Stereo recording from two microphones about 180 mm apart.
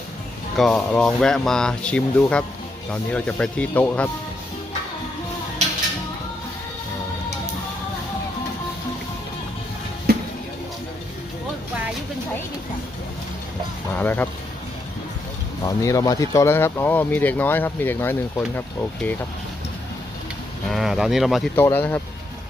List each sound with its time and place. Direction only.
0.5 s speech: centre (ahead or behind)
10.1 s music: 60° right (ahead or behind)
13.9 s speech: 10° left (ahead or behind)
15.8 s speech: 20° left (ahead or behind)
20.7 s speech: centre (ahead or behind)
21.5 s speech: 10° left (ahead or behind)